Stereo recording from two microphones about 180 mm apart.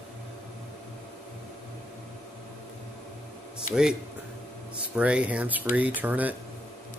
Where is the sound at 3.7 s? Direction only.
45° left (ahead or behind).